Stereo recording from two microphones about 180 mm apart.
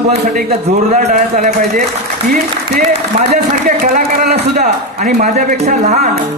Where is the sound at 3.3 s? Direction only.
55° right (ahead or behind).